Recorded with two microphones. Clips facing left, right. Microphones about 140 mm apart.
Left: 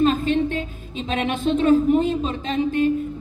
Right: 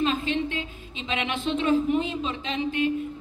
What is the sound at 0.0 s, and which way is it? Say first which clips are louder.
A woman's voice: left 7 dB; 45° left (ahead or behind).